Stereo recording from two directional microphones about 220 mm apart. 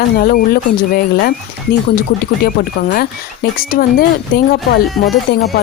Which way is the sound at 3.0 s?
40° left (ahead or behind).